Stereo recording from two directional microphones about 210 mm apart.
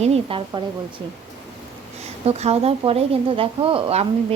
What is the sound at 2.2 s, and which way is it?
Speech, 30° right (ahead or behind).